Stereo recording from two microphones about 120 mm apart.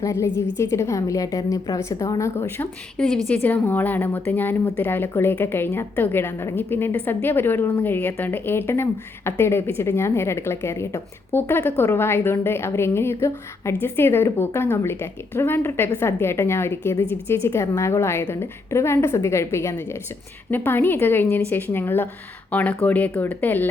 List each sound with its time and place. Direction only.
0.0 s a woman's voice: 25° left (ahead or behind)